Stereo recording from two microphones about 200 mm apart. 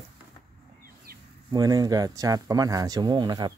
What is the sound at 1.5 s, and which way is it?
Speech, 20° right (ahead or behind).